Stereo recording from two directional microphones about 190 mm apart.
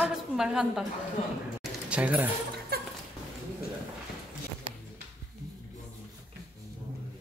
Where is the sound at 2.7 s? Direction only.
55° right (ahead or behind).